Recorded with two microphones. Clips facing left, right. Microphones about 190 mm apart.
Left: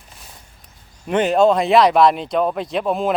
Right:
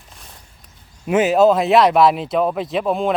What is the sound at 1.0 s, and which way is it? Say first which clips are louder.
Speech: right 1 dB; 5° right (ahead or behind).